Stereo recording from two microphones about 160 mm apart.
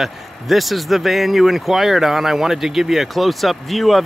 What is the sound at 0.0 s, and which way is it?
Speech, centre (ahead or behind).